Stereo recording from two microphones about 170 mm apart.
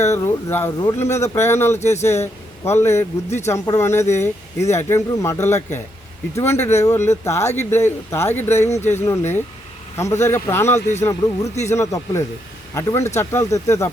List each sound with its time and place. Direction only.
0.1 s speech: 15° left (ahead or behind)
1.8 s speech: 40° left (ahead or behind)
2.2 s a man's voice: 15° left (ahead or behind)